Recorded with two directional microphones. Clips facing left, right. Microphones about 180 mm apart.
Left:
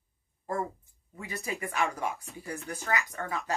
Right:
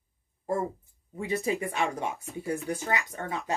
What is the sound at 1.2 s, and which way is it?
Speech, 25° right (ahead or behind).